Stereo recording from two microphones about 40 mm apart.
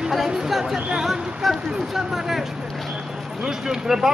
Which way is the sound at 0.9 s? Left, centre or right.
Centre.